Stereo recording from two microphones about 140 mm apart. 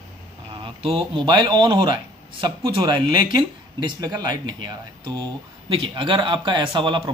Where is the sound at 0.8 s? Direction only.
35° right (ahead or behind).